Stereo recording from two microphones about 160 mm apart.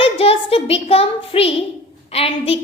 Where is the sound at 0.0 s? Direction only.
35° left (ahead or behind).